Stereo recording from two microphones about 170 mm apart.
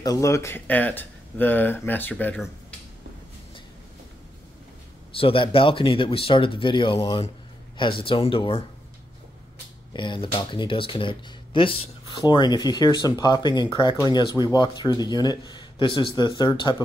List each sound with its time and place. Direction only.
0.0 s speech: 20° left (ahead or behind)
5.1 s speech: 30° left (ahead or behind)
9.9 s speech: 30° left (ahead or behind)